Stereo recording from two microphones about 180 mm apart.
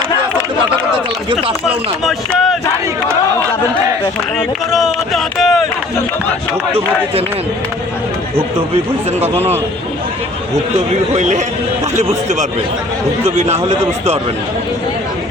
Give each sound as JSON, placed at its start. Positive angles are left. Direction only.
{"t": 1.3, "sound": "a man's voice", "side_deg": -30}
{"t": 1.6, "sound": "speech", "side_deg": 0}
{"t": 4.4, "sound": "speech", "side_deg": 0}
{"t": 11.1, "sound": "a man's voice", "side_deg": -40}